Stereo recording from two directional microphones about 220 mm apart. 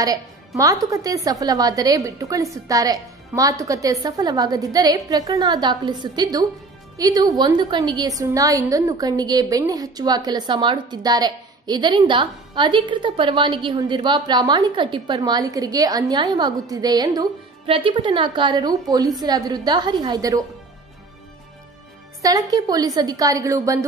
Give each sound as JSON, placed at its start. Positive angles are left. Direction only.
{"t": 0.0, "sound": "a woman's voice", "side_deg": -15}
{"t": 22.2, "sound": "a woman's voice", "side_deg": -15}